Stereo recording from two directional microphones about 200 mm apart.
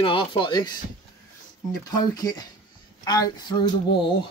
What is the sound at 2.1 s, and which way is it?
Speech, 20° left (ahead or behind).